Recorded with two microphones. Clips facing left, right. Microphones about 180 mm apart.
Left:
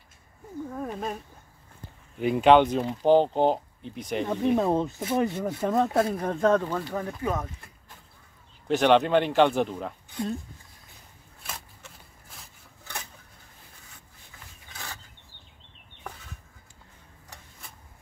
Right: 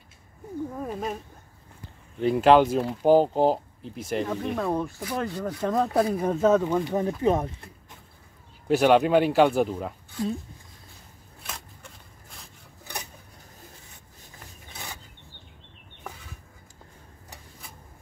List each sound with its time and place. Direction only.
0.7 s speech: 5° right (ahead or behind)
2.1 s speech: 5° left (ahead or behind)
4.6 s speech: 20° left (ahead or behind)
5.6 s speech: centre (ahead or behind)
6.8 s speech: 20° right (ahead or behind)
8.6 s speech: 5° right (ahead or behind)
11.4 s a sound: 5° left (ahead or behind)
14.7 s a sound: 15° right (ahead or behind)